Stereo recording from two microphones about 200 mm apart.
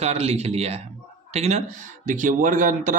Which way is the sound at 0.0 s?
30° right (ahead or behind).